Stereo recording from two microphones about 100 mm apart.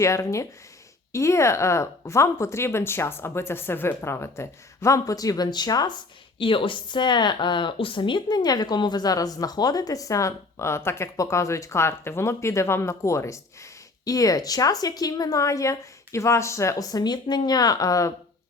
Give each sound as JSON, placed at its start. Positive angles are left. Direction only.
{"t": 0.0, "sound": "speech", "side_deg": 30}
{"t": 6.4, "sound": "speech", "side_deg": 60}